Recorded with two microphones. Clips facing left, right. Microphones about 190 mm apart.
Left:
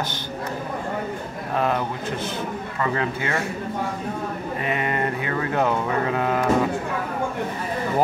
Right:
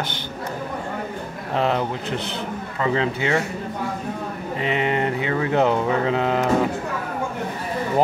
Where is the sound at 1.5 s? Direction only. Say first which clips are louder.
Right 2 dB; 20° right (ahead or behind).